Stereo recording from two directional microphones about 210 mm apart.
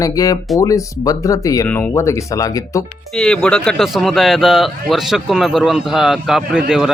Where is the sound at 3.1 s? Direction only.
5° left (ahead or behind).